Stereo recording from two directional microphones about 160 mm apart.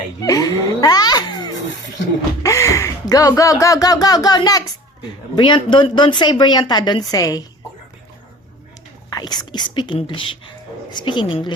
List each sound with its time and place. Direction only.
0.2 s a sound: 20° left (ahead or behind)
2.4 s a woman's voice: 20° left (ahead or behind)
9.1 s a woman's voice: 25° left (ahead or behind)